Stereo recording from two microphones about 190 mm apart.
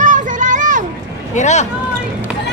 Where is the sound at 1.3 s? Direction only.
40° left (ahead or behind).